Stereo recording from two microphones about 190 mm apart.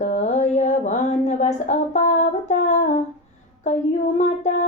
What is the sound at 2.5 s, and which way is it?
Female singing, 40° left (ahead or behind).